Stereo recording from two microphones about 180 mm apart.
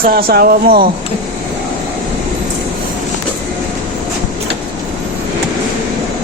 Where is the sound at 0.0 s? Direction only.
55° right (ahead or behind).